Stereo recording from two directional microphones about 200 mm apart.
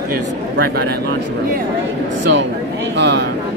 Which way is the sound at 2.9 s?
60° right (ahead or behind).